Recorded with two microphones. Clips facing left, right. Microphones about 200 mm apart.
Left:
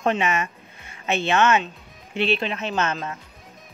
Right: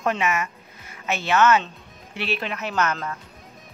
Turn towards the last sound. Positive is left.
turn(degrees=25)  # may be behind; listen again after turning